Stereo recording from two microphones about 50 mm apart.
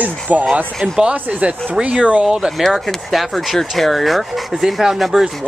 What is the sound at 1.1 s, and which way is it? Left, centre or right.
Speech, right.